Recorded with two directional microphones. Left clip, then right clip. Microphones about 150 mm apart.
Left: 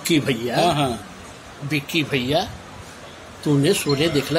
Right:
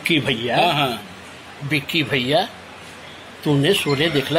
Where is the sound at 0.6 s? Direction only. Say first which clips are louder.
Left 1 dB; 30° left (ahead or behind).